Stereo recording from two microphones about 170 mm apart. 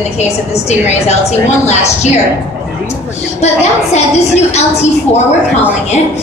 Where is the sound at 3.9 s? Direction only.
40° left (ahead or behind).